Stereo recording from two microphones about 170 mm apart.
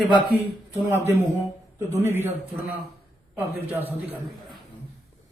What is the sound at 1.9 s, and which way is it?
Speech, 15° right (ahead or behind).